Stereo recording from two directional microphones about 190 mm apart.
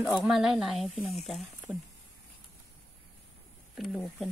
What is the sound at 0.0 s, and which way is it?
Speech, centre (ahead or behind).